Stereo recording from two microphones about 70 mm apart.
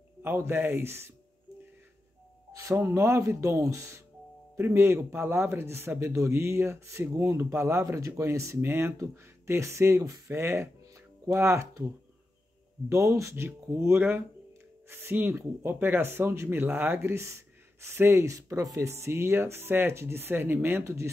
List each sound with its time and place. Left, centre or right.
0.2 s a man's voice: right
2.7 s a man's voice: right
8.5 s a man's voice: right
12.9 s a man's voice: right
18.8 s a man's voice: right
20.8 s speech: right